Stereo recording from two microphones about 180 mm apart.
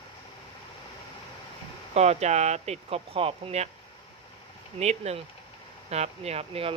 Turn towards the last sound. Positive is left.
turn(degrees=-30)  # may be behind; listen again after turning